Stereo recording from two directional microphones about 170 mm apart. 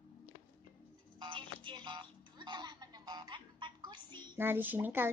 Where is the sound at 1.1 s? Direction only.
30° right (ahead or behind).